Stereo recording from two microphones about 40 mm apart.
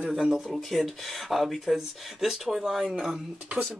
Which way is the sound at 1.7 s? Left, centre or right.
Centre.